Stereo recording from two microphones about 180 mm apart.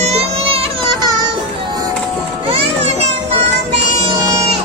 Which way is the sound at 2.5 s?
35° right (ahead or behind).